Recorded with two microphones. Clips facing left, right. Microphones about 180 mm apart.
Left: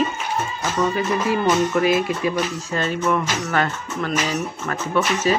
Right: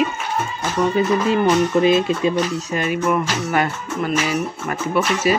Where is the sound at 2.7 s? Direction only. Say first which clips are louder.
Right 1 dB; 10° right (ahead or behind).